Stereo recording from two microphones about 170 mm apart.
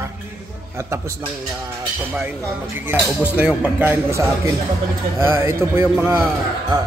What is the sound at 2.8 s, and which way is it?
Speech, 10° right (ahead or behind).